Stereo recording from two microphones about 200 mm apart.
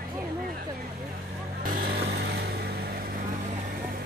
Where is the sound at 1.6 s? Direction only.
50° right (ahead or behind).